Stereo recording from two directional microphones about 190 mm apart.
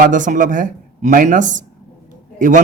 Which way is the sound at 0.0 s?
45° right (ahead or behind).